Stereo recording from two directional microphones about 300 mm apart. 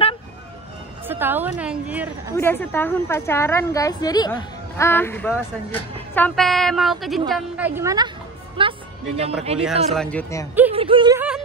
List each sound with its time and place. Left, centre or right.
1.0 s a woman's voice: centre
2.3 s a woman's voice: centre
8.5 s music: centre
9.9 s a woman's voice: centre
10.7 s a sound: centre